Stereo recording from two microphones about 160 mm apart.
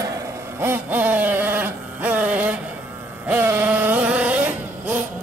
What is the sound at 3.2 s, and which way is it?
Vehicle, 15° right (ahead or behind).